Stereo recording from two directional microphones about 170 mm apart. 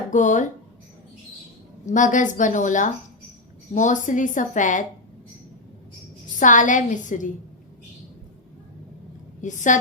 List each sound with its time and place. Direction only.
0.1 s a woman's voice: 45° left (ahead or behind)
1.9 s a woman's voice: 50° left (ahead or behind)
6.4 s a woman's voice: 50° left (ahead or behind)
9.4 s a woman's voice: 45° left (ahead or behind)